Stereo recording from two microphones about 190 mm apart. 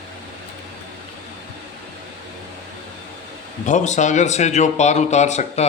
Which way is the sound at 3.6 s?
40° left (ahead or behind).